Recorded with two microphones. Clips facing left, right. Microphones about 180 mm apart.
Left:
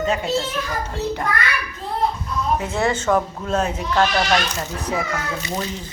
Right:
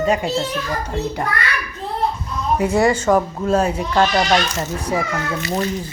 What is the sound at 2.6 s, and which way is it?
Speech, 10° right (ahead or behind).